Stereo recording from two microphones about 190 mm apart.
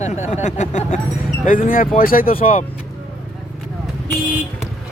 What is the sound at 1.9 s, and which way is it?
Speech, 50° left (ahead or behind).